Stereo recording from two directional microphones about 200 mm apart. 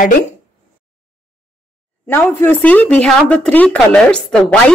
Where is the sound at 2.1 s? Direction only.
10° left (ahead or behind).